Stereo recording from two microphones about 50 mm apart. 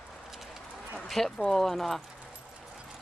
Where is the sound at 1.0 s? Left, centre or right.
Centre.